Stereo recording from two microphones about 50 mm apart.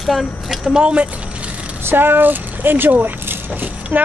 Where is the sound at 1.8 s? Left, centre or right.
Right.